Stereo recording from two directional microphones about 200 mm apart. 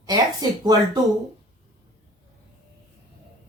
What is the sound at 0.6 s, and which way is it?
Speech, 20° right (ahead or behind).